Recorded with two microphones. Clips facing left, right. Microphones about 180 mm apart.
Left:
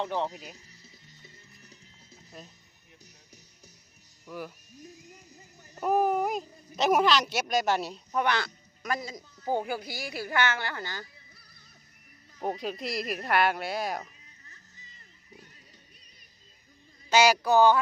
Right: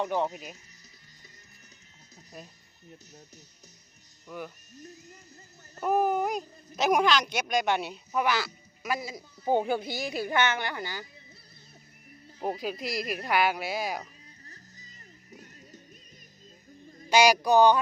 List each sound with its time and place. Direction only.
0.0 s speech: 15° right (ahead or behind)
4.3 s speech: 5° left (ahead or behind)
5.8 s speech: centre (ahead or behind)
9.5 s speech: 25° right (ahead or behind)
12.4 s speech: 5° right (ahead or behind)
14.4 s music: 40° right (ahead or behind)
17.1 s speech: 15° right (ahead or behind)